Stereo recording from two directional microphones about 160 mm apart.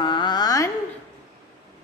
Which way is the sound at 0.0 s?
30° left (ahead or behind).